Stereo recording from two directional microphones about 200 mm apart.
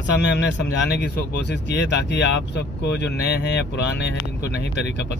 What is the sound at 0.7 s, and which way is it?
Speech, 60° left (ahead or behind).